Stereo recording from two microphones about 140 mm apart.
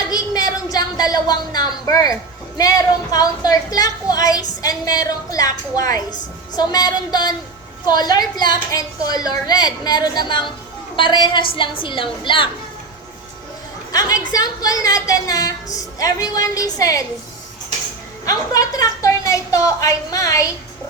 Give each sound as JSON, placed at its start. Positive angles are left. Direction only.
{"t": 0.1, "sound": "a sound", "side_deg": 25}
{"t": 1.1, "sound": "a woman's voice", "side_deg": 30}
{"t": 13.9, "sound": "a woman's voice", "side_deg": 25}
{"t": 18.3, "sound": "a woman's voice", "side_deg": 25}